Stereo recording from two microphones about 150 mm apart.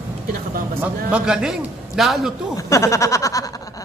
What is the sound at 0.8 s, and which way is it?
A man's voice, 5° right (ahead or behind).